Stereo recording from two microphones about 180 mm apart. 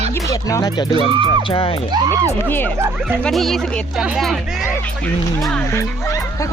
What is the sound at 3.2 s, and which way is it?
Speech, centre (ahead or behind).